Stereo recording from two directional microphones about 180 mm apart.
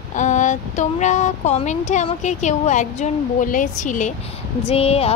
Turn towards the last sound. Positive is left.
turn(degrees=35)  # may be behind; listen again after turning